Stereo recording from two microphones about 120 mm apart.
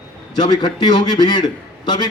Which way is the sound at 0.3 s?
35° left (ahead or behind).